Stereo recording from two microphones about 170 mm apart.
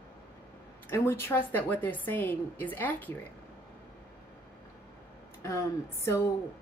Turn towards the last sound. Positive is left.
turn(degrees=15)  # may be behind; listen again after turning